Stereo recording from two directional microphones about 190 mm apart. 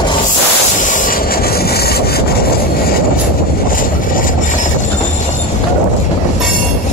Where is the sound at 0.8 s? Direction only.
45° left (ahead or behind).